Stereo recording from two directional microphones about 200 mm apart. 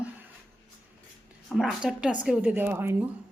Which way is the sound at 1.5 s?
Centre (ahead or behind).